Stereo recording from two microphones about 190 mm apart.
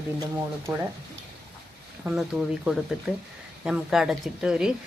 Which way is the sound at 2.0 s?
Centre (ahead or behind).